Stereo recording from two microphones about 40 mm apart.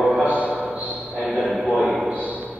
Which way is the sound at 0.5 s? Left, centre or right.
Right.